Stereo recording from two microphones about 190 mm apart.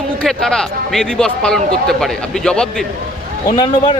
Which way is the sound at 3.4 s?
25° left (ahead or behind).